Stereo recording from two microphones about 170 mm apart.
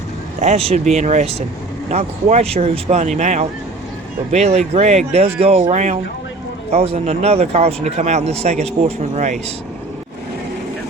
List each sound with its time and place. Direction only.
0.3 s speech: 40° right (ahead or behind)